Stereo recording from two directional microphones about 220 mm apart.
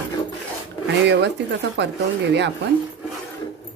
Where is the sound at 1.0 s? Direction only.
50° right (ahead or behind).